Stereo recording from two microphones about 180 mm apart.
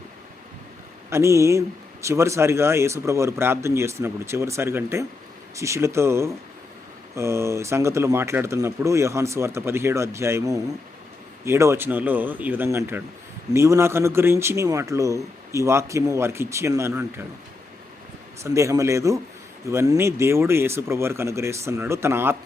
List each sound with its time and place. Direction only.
1.1 s speech: 15° right (ahead or behind)
18.4 s speech: 15° right (ahead or behind)